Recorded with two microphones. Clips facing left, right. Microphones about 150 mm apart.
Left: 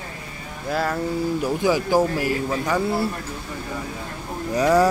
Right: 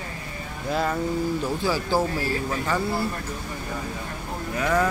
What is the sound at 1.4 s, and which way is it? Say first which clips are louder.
Speech: left 5 dB; 15° left (ahead or behind).